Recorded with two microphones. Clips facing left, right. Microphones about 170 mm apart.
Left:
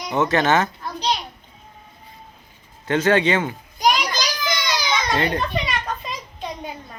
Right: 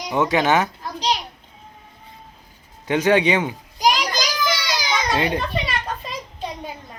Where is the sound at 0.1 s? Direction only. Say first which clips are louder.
Even; 10° right (ahead or behind).